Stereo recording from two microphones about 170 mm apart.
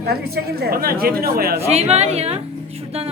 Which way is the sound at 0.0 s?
70° right (ahead or behind).